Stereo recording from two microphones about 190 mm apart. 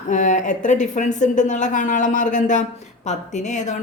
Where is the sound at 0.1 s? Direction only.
40° left (ahead or behind).